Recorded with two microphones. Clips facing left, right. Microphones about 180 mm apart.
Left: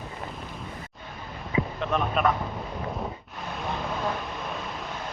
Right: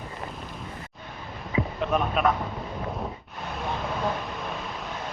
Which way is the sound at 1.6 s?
5° right (ahead or behind).